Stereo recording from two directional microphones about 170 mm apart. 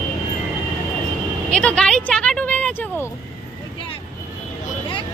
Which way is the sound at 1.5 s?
5° left (ahead or behind).